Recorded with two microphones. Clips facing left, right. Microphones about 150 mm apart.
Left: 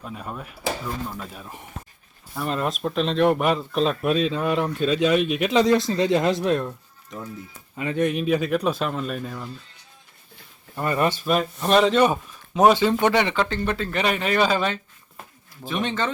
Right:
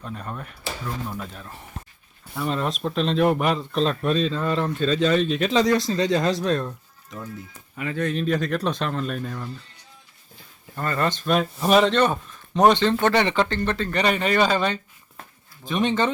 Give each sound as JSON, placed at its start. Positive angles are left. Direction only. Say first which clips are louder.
{"t": 0.0, "sound": "speech", "louder": "even", "side_deg": 5}
{"t": 2.3, "sound": "speech", "louder": "even", "side_deg": 0}
{"t": 7.8, "sound": "speech", "louder": "left 3 dB", "side_deg": 20}
{"t": 10.8, "sound": "speech", "louder": "left 2 dB", "side_deg": 15}